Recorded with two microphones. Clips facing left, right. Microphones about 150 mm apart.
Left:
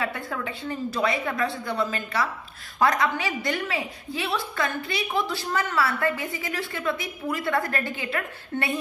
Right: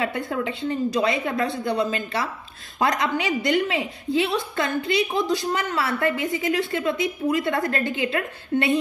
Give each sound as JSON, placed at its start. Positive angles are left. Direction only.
{"t": 0.0, "sound": "a woman's voice", "side_deg": -25}